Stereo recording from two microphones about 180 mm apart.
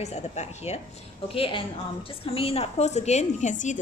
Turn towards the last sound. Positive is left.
turn(degrees=40)  # may be behind; listen again after turning